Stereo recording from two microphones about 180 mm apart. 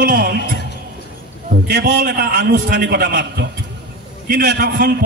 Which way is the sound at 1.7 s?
70° right (ahead or behind).